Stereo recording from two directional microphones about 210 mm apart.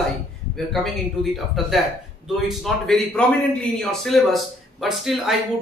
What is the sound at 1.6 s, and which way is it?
A man's voice, centre (ahead or behind).